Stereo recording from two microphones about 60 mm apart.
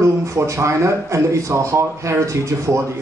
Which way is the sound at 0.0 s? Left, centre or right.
Right.